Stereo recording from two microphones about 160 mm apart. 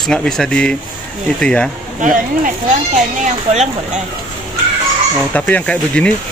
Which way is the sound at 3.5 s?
45° right (ahead or behind).